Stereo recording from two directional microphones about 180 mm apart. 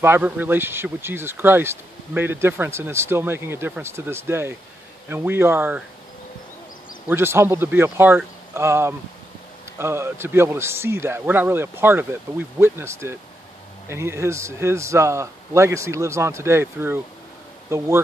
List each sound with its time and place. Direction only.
0.0 s speech: 10° right (ahead or behind)
7.1 s speech: 15° right (ahead or behind)